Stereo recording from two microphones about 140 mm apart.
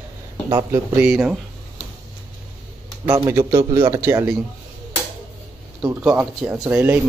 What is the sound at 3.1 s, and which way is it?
Speech, 15° right (ahead or behind).